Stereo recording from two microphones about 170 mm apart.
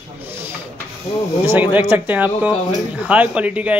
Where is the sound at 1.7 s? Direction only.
10° right (ahead or behind).